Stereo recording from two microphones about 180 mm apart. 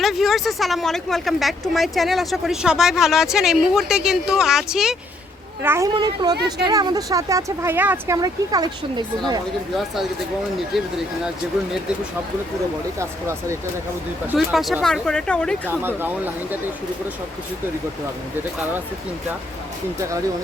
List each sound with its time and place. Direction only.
0.0 s speech: centre (ahead or behind)
5.6 s speech: 15° right (ahead or behind)
9.7 s speech: centre (ahead or behind)
13.0 s speech: 15° right (ahead or behind)
14.3 s speech: centre (ahead or behind)
15.7 s speech: 10° right (ahead or behind)